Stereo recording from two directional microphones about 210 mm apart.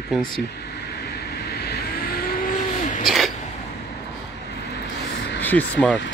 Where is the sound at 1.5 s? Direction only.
50° left (ahead or behind).